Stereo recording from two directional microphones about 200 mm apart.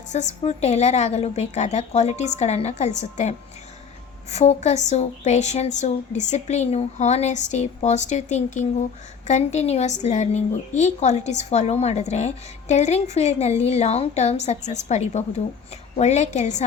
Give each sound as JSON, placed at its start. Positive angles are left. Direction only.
{"t": 0.1, "sound": "a woman's voice", "side_deg": 35}